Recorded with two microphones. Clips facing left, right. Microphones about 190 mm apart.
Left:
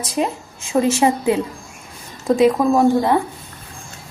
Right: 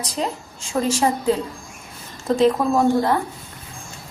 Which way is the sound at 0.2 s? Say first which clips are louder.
Left 5 dB; 15° left (ahead or behind).